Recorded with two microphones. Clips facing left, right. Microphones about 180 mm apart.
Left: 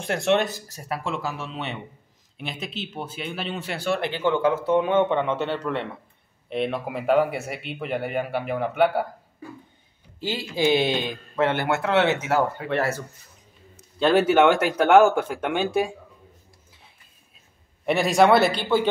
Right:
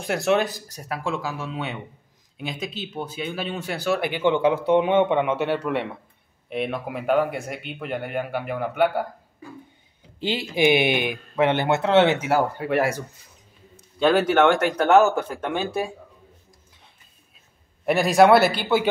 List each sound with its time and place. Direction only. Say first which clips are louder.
0.0 s speech: even; centre (ahead or behind)
4.2 s speech: right 2 dB; 15° right (ahead or behind); by 9.0 s centre (ahead or behind)
10.2 s speech: right 3 dB; 20° right (ahead or behind)
13.9 s speech: even; 5° left (ahead or behind)
17.8 s speech: right 2 dB; centre (ahead or behind)